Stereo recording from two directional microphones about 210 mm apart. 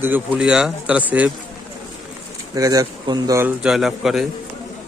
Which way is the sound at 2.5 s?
15° right (ahead or behind).